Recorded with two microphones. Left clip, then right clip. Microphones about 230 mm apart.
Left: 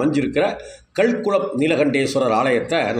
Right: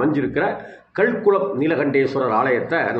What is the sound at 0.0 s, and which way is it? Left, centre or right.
A man's voice, left.